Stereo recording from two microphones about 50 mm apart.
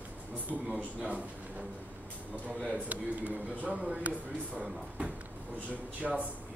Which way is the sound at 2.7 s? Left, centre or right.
Right.